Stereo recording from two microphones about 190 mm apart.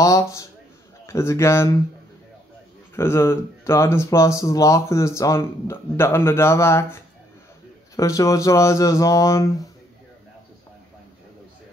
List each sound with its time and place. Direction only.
0.0 s a man's voice: 15° left (ahead or behind)
3.0 s speech: 15° left (ahead or behind)